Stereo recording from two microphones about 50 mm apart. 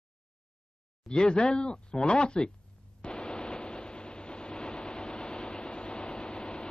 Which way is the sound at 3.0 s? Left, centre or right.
Left.